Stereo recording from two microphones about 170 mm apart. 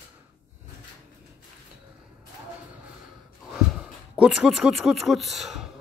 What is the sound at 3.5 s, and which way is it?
Speech, 5° right (ahead or behind).